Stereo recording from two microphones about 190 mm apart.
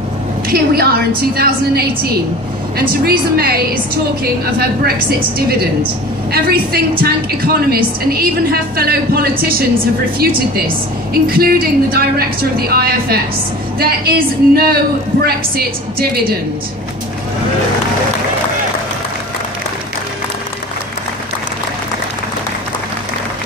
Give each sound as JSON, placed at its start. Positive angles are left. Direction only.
{"t": 0.5, "sound": "a woman's voice", "side_deg": -55}
{"t": 3.1, "sound": "a woman's voice", "side_deg": -55}
{"t": 6.3, "sound": "a woman's voice", "side_deg": -50}